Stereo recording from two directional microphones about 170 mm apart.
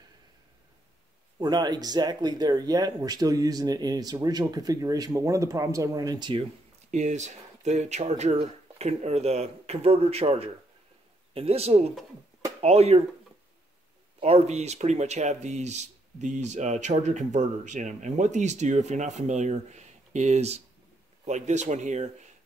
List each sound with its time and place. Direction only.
1.4 s speech: 25° right (ahead or behind)
14.2 s speech: 40° right (ahead or behind)